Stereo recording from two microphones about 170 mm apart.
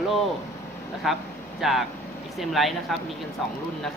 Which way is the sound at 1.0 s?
Centre (ahead or behind).